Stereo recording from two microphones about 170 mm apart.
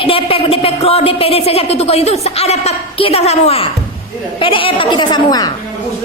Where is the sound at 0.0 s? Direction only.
35° left (ahead or behind).